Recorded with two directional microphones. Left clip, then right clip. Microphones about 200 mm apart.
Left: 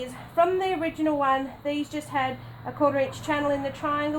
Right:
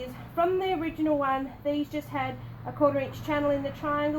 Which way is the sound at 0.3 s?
25° left (ahead or behind).